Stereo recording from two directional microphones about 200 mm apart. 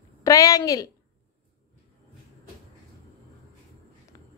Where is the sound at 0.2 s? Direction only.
15° left (ahead or behind).